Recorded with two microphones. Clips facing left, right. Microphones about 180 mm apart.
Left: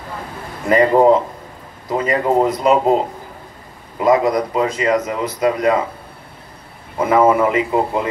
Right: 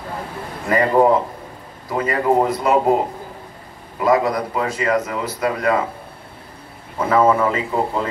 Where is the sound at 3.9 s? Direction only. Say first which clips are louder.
Left 3 dB; 20° left (ahead or behind).